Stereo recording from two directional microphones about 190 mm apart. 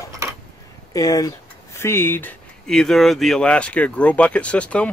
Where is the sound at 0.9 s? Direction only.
20° left (ahead or behind).